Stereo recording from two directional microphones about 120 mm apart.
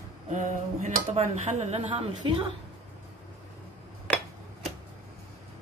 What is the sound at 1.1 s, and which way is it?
Speech, 60° right (ahead or behind).